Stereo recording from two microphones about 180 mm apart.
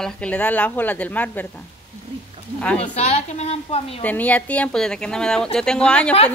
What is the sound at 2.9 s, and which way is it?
A woman's voice, 35° left (ahead or behind).